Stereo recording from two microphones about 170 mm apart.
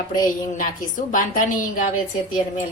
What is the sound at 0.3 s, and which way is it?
A woman's voice, 50° left (ahead or behind).